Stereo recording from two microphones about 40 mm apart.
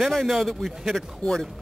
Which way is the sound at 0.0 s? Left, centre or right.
Centre.